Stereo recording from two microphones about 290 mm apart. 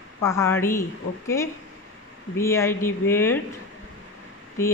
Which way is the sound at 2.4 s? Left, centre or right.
Centre.